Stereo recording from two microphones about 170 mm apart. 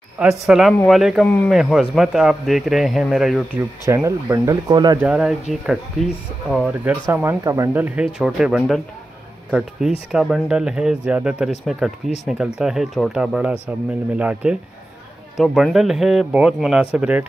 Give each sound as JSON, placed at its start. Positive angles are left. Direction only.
{"t": 0.2, "sound": "speech", "side_deg": -5}
{"t": 3.8, "sound": "speech", "side_deg": -15}
{"t": 5.0, "sound": "speech", "side_deg": -5}
{"t": 6.8, "sound": "speech", "side_deg": -10}